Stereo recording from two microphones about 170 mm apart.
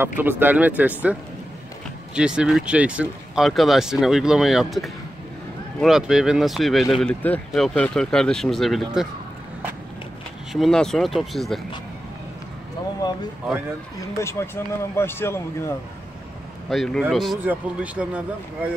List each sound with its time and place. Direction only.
0.2 s speech: 10° right (ahead or behind)
2.1 s speech: 5° right (ahead or behind)
10.5 s speech: centre (ahead or behind)
13.0 s a sound: 20° left (ahead or behind)
14.1 s speech: 15° left (ahead or behind)
16.6 s speech: centre (ahead or behind)